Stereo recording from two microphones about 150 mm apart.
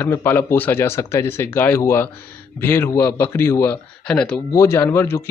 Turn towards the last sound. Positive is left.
turn(degrees=15)  # may be behind; listen again after turning